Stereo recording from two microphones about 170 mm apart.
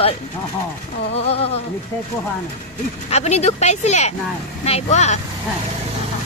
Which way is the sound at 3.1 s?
40° left (ahead or behind).